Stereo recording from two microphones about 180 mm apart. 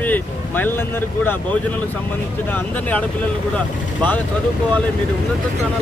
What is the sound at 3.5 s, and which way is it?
Speech, 10° left (ahead or behind).